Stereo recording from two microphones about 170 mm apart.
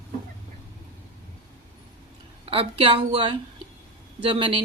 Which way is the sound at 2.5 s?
30° right (ahead or behind).